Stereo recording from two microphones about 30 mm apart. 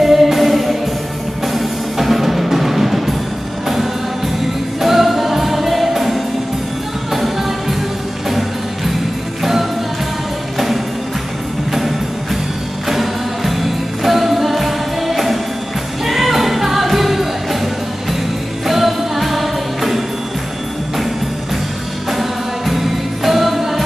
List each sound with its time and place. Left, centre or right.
0.0 s music: centre
4.8 s music: centre
12.8 s music: centre
18.7 s music: centre
22.7 s music: centre